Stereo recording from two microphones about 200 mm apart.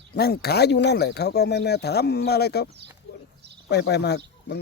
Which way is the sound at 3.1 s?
55° left (ahead or behind).